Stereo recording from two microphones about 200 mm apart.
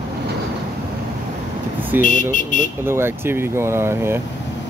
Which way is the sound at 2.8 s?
10° right (ahead or behind).